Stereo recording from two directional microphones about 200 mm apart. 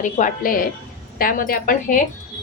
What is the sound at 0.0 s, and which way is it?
A woman's voice, 40° left (ahead or behind).